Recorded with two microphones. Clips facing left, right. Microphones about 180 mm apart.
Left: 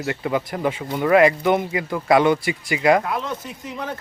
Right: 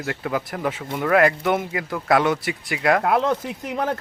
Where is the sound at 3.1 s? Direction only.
70° right (ahead or behind).